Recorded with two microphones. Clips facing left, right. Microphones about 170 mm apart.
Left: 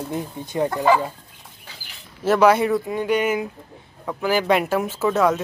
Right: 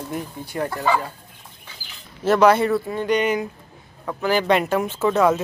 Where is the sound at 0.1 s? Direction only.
20° left (ahead or behind).